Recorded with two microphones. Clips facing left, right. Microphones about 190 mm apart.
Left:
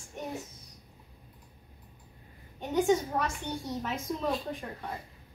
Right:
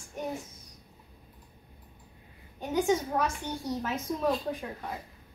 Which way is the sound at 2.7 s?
Centre (ahead or behind).